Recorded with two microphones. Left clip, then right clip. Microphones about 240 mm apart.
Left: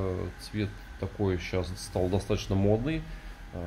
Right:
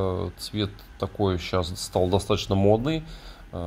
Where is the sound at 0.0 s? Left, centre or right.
Centre.